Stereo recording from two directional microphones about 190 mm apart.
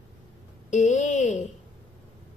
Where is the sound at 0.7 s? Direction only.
40° left (ahead or behind).